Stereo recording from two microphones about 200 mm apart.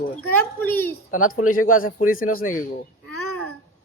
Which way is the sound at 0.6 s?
10° left (ahead or behind).